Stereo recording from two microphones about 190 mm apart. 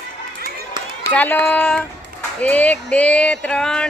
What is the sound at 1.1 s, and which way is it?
Speech, 10° left (ahead or behind).